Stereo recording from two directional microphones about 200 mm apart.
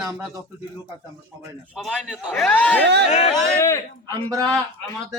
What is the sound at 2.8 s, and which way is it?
Speech, 60° right (ahead or behind).